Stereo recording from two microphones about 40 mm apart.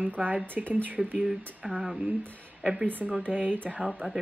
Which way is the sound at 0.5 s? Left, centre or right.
Right.